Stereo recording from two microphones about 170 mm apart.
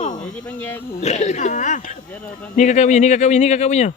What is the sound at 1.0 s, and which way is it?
Speech, 40° left (ahead or behind).